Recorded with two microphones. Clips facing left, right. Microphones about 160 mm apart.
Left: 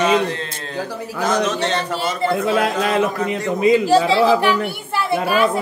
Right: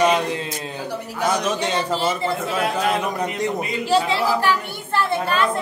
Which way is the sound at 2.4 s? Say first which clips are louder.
Left 2 dB; 90° left.